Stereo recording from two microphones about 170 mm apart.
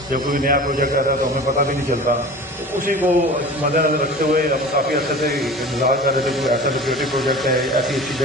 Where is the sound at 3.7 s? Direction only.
55° right (ahead or behind).